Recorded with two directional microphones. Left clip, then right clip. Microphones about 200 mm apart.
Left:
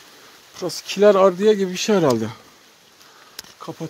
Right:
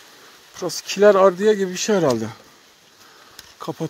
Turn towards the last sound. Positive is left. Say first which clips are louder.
# right 4 dB
turn(degrees=-40)  # may be behind; listen again after turning